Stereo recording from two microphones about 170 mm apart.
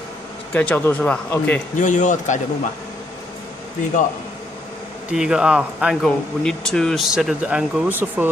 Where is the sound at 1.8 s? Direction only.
45° left (ahead or behind).